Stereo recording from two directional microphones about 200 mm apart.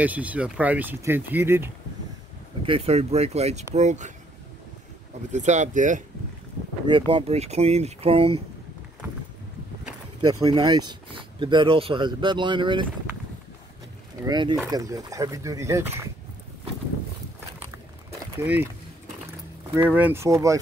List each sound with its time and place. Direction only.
0.0 s speech: 5° right (ahead or behind)
2.6 s speech: 30° right (ahead or behind)
5.3 s speech: 35° right (ahead or behind)
7.1 s speech: 25° right (ahead or behind)
10.4 s speech: 20° right (ahead or behind)
14.2 s speech: 20° right (ahead or behind)
18.4 s speech: 10° right (ahead or behind)
19.7 s speech: 10° right (ahead or behind)